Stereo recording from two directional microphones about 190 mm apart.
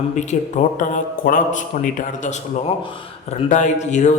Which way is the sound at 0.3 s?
40° left (ahead or behind).